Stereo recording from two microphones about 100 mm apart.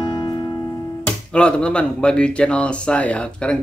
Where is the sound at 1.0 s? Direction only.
10° left (ahead or behind).